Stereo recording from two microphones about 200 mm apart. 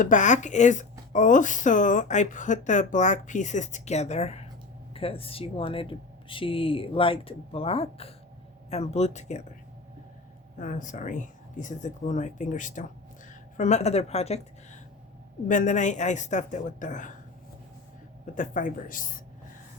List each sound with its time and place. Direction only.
0.0 s speech: 40° left (ahead or behind)
10.6 s a woman's voice: 40° left (ahead or behind)
18.3 s speech: 40° left (ahead or behind)